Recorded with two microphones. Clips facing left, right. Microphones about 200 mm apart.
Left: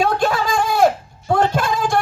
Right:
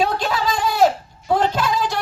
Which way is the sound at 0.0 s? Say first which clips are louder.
Left 3 dB; 50° left (ahead or behind).